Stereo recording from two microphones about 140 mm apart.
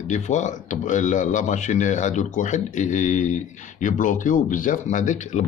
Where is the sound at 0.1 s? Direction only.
60° left (ahead or behind).